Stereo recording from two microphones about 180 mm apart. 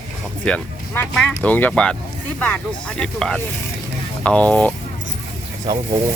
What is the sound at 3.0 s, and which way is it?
Speech, 5° left (ahead or behind).